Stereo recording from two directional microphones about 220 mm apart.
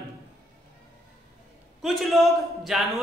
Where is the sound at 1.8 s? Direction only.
Centre (ahead or behind).